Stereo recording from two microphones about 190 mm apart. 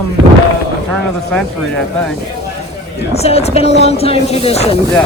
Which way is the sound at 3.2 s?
35° left (ahead or behind).